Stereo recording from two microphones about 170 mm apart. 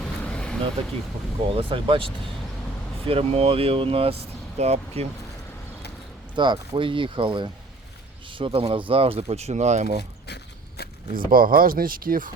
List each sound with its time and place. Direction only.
0.0 s vehicle: 5° left (ahead or behind)
1.5 s speech: 30° right (ahead or behind)
6.3 s speech: 25° right (ahead or behind); by 10.0 s 45° right (ahead or behind)
10.0 s a sound: 75° left (ahead or behind)
11.1 s speech: 55° right (ahead or behind)